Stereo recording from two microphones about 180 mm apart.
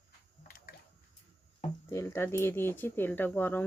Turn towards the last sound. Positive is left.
turn(degrees=10)  # may be behind; listen again after turning